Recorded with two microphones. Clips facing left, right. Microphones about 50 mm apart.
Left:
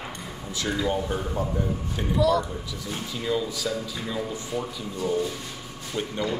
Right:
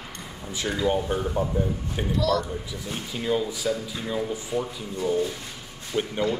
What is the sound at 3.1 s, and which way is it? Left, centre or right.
Speech, right.